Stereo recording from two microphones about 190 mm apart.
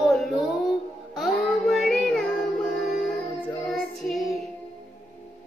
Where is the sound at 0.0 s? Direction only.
Centre (ahead or behind).